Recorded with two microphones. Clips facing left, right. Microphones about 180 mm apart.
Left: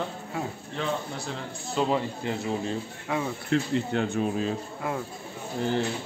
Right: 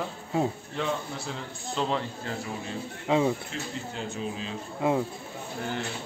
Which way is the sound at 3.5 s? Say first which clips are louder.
Left 10 dB; 65° left (ahead or behind).